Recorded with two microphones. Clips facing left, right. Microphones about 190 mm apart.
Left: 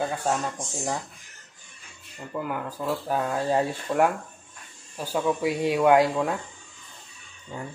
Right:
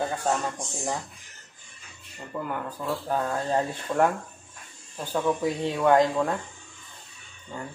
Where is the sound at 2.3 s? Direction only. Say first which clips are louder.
Left 1 dB; 5° left (ahead or behind).